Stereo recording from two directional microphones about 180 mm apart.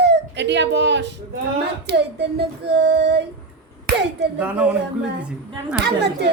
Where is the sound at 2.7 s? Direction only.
65° right (ahead or behind).